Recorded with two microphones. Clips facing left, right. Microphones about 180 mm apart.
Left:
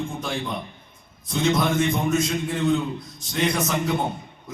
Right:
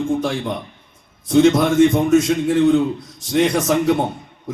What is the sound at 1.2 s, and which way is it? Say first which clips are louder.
A man's voice: right 9 dB; 80° right.